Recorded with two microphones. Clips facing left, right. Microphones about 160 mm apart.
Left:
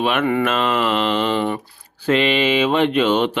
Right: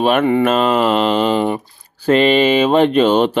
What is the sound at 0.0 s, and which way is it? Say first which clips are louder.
Mantra: right 5 dB; 40° right (ahead or behind).